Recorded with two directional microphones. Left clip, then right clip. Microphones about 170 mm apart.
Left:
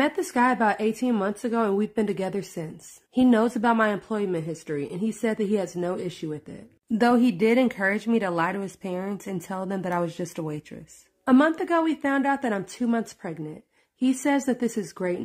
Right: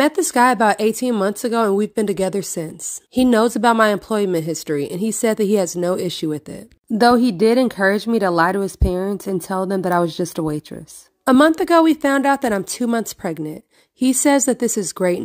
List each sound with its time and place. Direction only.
0.0 s a woman's voice: 30° right (ahead or behind)
7.0 s a woman's voice: 25° right (ahead or behind)